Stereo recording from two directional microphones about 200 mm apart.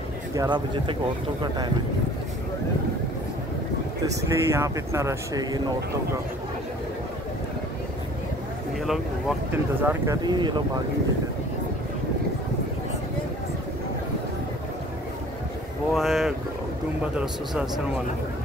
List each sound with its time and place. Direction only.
0.3 s speech: 20° right (ahead or behind)
4.1 s speech: 15° right (ahead or behind)
9.8 s speech: 10° right (ahead or behind)
10.2 s speech: 20° right (ahead or behind)
15.9 s speech: centre (ahead or behind)